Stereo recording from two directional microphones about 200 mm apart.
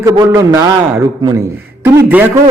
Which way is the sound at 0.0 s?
15° right (ahead or behind).